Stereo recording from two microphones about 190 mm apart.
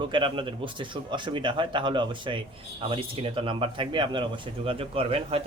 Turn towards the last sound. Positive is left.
turn(degrees=-30)  # may be behind; listen again after turning